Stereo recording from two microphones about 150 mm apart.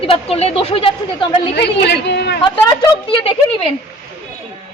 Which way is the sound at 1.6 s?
90° left.